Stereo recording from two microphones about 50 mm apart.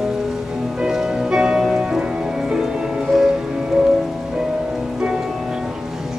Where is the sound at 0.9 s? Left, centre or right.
Centre.